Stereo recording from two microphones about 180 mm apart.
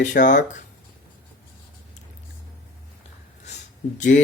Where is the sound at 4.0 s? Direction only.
45° left (ahead or behind).